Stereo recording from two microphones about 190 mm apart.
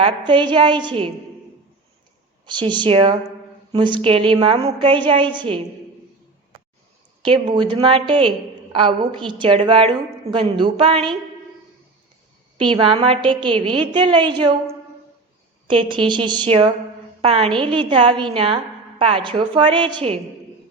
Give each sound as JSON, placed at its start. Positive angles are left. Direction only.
{"t": 0.0, "sound": "a woman's voice", "side_deg": -25}
{"t": 2.5, "sound": "a woman's voice", "side_deg": -25}
{"t": 7.2, "sound": "a woman's voice", "side_deg": -25}
{"t": 12.5, "sound": "a woman's voice", "side_deg": -25}
{"t": 15.6, "sound": "a woman's voice", "side_deg": -25}